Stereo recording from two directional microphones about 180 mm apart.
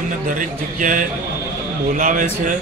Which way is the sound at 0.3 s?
45° right (ahead or behind).